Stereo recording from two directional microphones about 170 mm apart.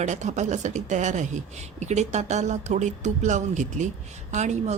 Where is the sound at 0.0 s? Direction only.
45° right (ahead or behind).